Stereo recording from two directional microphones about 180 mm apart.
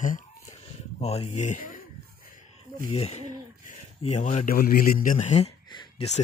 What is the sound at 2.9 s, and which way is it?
Speech, 35° left (ahead or behind).